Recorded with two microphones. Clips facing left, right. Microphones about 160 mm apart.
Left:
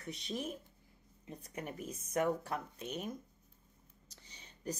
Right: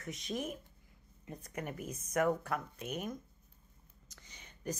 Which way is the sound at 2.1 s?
30° left (ahead or behind).